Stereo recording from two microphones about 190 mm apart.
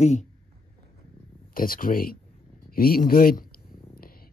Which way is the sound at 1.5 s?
50° left (ahead or behind).